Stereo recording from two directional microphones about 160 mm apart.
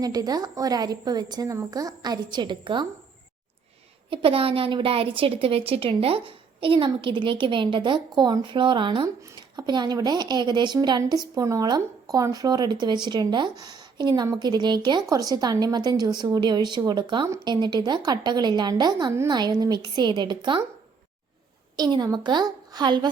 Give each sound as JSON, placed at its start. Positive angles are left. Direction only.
{"t": 0.0, "sound": "a woman's voice", "side_deg": -25}
{"t": 4.1, "sound": "a woman's voice", "side_deg": -35}
{"t": 17.2, "sound": "a woman's voice", "side_deg": -15}
{"t": 17.5, "sound": "a woman's voice", "side_deg": -25}
{"t": 21.8, "sound": "a woman's voice", "side_deg": -25}